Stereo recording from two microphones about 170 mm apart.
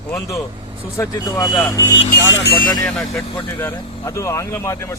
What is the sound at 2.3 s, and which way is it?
Speech, 60° left (ahead or behind).